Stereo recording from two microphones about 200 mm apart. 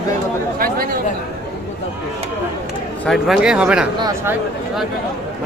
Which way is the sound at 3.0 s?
Centre (ahead or behind).